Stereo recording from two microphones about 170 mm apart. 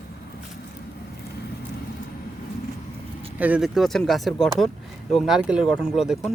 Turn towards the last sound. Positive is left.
turn(degrees=-5)  # may be behind; listen again after turning